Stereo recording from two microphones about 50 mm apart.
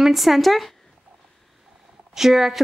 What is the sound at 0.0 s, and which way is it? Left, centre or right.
Speech, centre.